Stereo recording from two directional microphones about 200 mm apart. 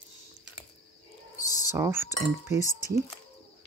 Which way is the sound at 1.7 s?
15° right (ahead or behind).